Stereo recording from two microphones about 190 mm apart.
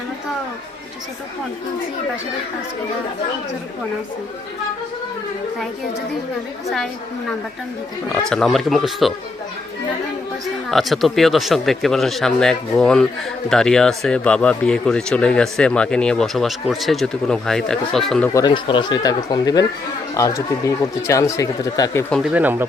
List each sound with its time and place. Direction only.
8.1 s speech: 5° left (ahead or behind)
10.7 s speech: centre (ahead or behind)
18.3 s speech: 25° left (ahead or behind)
22.1 s speech: 5° right (ahead or behind)